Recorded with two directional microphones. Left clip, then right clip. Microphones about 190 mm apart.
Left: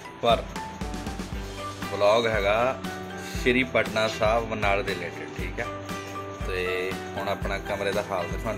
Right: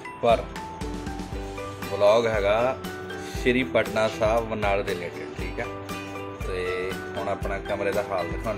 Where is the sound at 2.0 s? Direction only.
10° right (ahead or behind).